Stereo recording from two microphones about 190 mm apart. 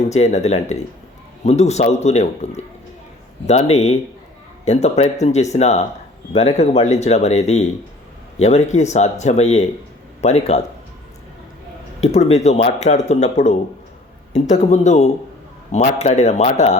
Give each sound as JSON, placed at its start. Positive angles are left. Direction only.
{"t": 0.1, "sound": "a man's voice", "side_deg": 35}
{"t": 12.0, "sound": "speech", "side_deg": 35}